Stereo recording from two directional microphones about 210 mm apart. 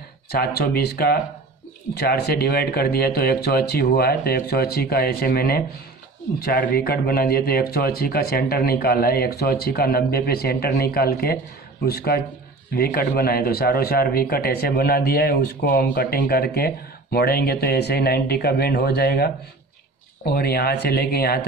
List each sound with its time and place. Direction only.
0.3 s a man's voice: 50° left (ahead or behind)